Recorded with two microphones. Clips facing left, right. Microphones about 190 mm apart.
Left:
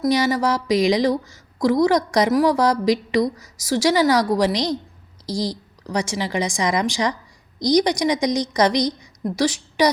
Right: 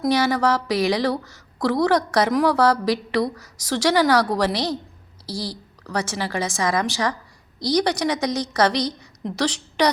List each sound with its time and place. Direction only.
0.1 s a woman's voice: 10° left (ahead or behind)